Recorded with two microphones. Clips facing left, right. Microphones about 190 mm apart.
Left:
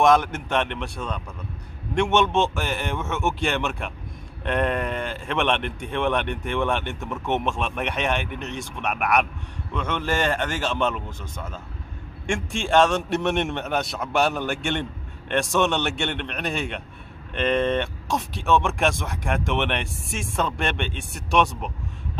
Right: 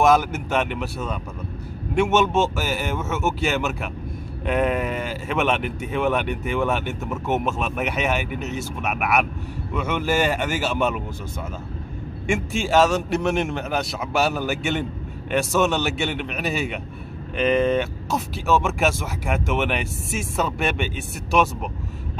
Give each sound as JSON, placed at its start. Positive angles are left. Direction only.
{"t": 0.0, "sound": "speech", "side_deg": -5}
{"t": 12.3, "sound": "speech", "side_deg": -5}